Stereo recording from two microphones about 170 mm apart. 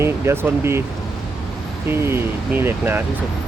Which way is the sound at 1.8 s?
15° right (ahead or behind).